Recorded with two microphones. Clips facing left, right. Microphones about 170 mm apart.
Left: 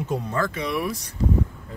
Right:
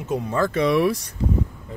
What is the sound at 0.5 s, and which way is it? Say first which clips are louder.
Speech: right 8 dB; 85° right.